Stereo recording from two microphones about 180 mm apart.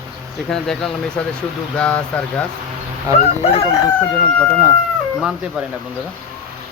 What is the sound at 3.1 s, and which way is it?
Speech, 15° right (ahead or behind).